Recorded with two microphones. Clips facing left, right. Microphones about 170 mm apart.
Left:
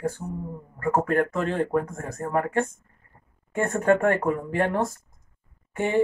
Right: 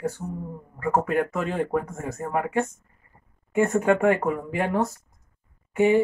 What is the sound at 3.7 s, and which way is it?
Speech, 10° right (ahead or behind).